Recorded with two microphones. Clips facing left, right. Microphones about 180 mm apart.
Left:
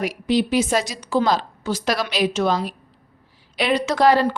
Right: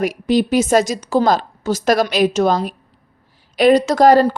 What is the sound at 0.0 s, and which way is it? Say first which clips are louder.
Speech: right 4 dB; 45° right (ahead or behind).